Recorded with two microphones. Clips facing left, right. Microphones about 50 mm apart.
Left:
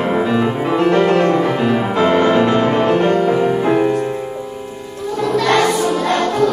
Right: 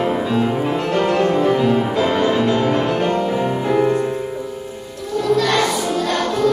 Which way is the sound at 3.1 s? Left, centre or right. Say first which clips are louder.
Left 5 dB; left.